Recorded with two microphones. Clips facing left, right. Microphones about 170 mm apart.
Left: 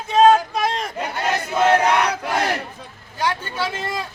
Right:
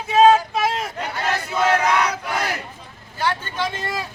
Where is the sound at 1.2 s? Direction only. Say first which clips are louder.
Left 3 dB; 25° left (ahead or behind).